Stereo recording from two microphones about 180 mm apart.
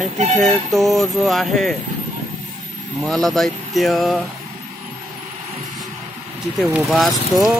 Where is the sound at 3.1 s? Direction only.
Centre (ahead or behind).